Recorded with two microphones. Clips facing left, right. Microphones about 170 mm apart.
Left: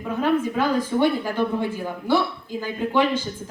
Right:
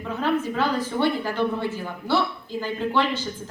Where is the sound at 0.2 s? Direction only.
10° left (ahead or behind).